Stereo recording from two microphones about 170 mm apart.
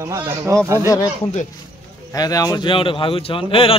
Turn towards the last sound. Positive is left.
turn(degrees=30)  # may be behind; listen again after turning